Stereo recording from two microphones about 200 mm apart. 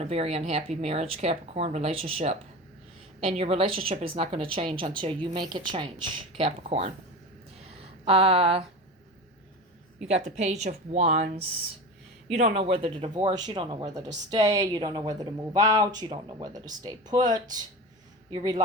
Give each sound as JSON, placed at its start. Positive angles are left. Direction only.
{"t": 0.0, "sound": "speech", "side_deg": -30}
{"t": 8.0, "sound": "speech", "side_deg": -30}
{"t": 10.2, "sound": "speech", "side_deg": -35}